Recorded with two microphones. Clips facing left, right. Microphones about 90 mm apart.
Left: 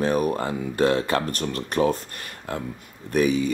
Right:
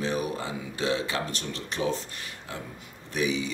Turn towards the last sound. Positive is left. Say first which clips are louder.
# left 7 dB
turn(degrees=50)  # may be behind; listen again after turning